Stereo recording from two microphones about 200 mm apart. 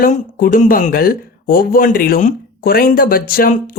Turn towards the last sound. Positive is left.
turn(degrees=45)  # may be behind; listen again after turning